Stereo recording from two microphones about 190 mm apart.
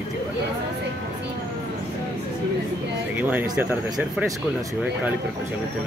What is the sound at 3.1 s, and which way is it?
Speech, 10° right (ahead or behind).